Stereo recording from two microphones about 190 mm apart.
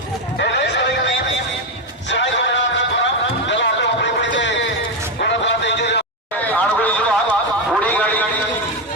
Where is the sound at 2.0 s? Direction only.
70° left (ahead or behind).